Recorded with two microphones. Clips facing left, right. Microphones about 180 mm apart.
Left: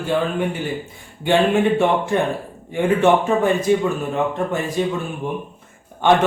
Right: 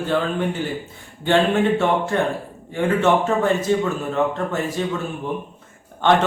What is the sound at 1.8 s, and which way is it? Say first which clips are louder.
Speech: left 2 dB; 15° left (ahead or behind).